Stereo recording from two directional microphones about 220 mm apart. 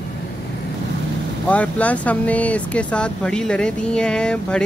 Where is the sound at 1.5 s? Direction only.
5° left (ahead or behind).